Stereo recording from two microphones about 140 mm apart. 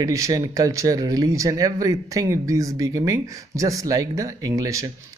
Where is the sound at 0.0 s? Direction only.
25° right (ahead or behind).